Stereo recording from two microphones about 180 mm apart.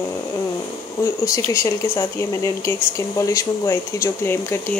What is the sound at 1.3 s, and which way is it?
Speech, 15° left (ahead or behind).